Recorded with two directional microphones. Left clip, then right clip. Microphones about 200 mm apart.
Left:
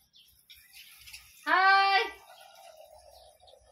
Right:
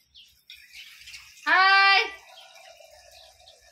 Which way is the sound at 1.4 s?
10° left (ahead or behind).